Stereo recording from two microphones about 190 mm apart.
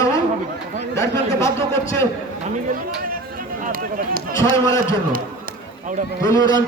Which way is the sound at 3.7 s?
50° right (ahead or behind).